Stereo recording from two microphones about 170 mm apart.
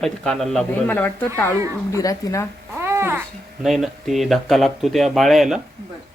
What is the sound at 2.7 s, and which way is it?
Babbling, 15° right (ahead or behind).